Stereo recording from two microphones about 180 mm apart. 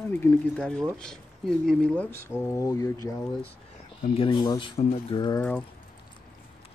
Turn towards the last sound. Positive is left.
turn(degrees=25)  # may be behind; listen again after turning